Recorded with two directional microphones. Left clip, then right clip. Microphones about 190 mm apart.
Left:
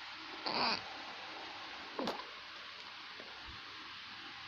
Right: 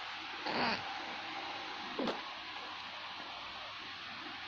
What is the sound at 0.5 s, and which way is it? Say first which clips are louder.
Cat: even; 20° left (ahead or behind).